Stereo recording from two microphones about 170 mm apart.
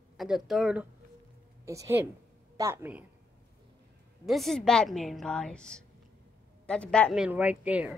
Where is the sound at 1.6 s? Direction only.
15° right (ahead or behind).